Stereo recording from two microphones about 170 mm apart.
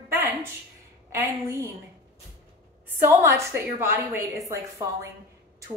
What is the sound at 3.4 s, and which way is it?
A woman's voice, 15° right (ahead or behind).